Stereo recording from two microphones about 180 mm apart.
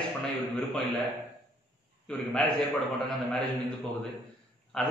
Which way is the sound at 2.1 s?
5° left (ahead or behind).